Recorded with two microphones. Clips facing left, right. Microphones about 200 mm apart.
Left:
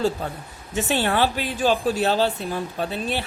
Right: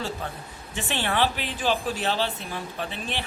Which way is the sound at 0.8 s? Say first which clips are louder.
Left 5 dB; 40° left (ahead or behind).